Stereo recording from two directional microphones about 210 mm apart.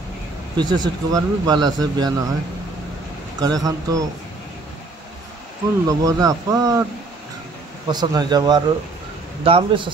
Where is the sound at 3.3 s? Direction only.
20° right (ahead or behind).